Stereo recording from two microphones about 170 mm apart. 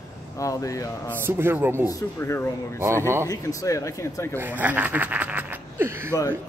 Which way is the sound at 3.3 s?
20° left (ahead or behind).